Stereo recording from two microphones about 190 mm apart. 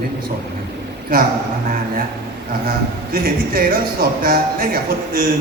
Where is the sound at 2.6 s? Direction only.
50° right (ahead or behind).